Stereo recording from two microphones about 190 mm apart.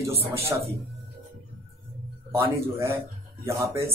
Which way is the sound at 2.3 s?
15° right (ahead or behind).